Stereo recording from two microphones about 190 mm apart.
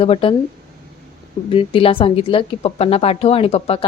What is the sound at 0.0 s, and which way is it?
Speech, 30° left (ahead or behind).